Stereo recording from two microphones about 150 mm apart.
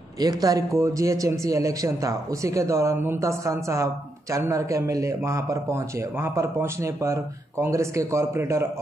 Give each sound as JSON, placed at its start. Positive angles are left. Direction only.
{"t": 0.2, "sound": "a man's voice", "side_deg": -25}